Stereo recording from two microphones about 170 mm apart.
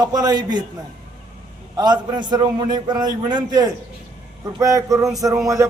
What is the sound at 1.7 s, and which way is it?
A man's voice, 25° right (ahead or behind).